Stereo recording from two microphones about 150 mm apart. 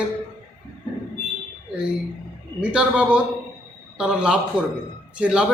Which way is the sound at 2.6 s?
5° right (ahead or behind).